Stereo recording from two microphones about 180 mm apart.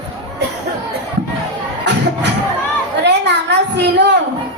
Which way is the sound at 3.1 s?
70° right (ahead or behind).